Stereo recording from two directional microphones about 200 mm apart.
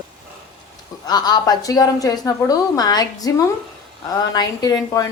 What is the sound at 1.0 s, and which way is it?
A woman's voice, 20° left (ahead or behind).